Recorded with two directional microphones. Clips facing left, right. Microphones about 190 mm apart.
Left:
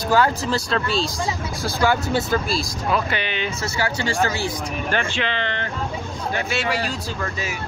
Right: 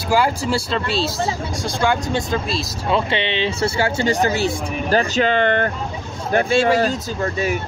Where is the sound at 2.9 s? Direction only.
25° right (ahead or behind).